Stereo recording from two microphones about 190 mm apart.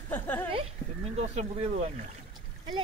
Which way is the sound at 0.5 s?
30° right (ahead or behind).